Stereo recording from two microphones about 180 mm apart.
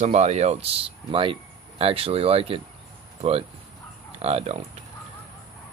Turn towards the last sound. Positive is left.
turn(degrees=-35)  # may be behind; listen again after turning